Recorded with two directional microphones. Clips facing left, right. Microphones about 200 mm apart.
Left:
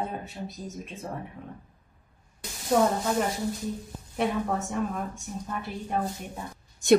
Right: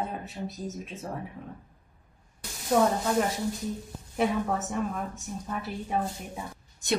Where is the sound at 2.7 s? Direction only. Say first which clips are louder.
Even; centre (ahead or behind).